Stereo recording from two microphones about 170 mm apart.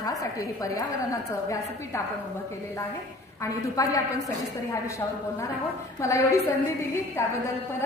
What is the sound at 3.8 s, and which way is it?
Speech, 20° left (ahead or behind).